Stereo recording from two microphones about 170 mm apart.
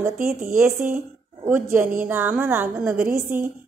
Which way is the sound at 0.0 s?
15° right (ahead or behind).